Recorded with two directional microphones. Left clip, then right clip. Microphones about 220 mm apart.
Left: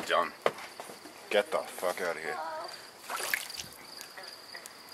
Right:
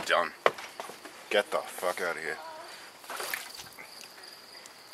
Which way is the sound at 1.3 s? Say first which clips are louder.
Right 1 dB; 15° right (ahead or behind).